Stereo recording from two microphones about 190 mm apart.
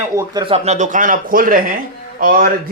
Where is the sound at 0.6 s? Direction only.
40° right (ahead or behind).